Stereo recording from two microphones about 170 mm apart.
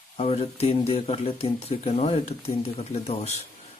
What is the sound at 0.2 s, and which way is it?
Speech, 40° left (ahead or behind).